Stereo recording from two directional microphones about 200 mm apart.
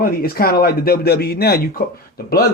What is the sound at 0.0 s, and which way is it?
Speech, 50° left (ahead or behind).